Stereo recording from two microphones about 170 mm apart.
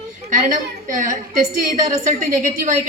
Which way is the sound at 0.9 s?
50° right (ahead or behind).